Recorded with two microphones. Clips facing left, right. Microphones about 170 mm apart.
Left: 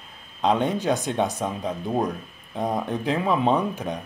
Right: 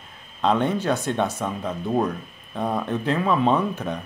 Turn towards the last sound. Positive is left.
turn(degrees=15)  # may be behind; listen again after turning